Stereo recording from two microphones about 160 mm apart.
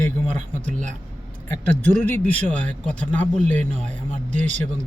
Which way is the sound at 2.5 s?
50° right (ahead or behind).